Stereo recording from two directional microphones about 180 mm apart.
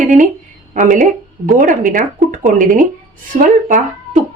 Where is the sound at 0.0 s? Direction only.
45° right (ahead or behind).